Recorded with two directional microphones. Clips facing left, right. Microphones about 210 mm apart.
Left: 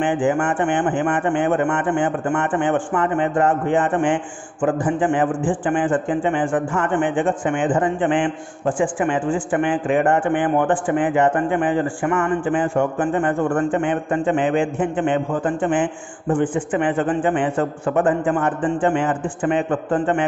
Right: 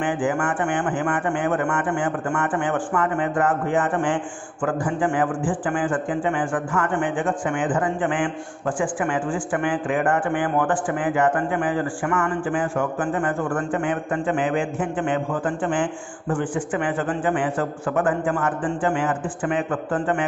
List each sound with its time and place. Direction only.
0.0 s speech: 25° left (ahead or behind)